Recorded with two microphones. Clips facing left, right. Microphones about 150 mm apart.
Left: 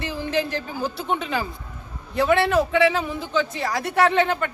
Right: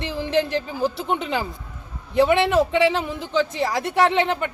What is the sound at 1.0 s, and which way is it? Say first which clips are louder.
A man's voice: right 1 dB; 20° right (ahead or behind).